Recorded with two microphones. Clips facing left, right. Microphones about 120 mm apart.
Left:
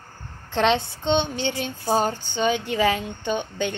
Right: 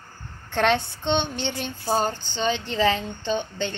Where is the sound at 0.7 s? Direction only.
10° left (ahead or behind).